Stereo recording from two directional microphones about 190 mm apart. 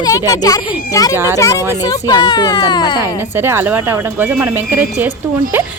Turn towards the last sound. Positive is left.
turn(degrees=-10)  # may be behind; listen again after turning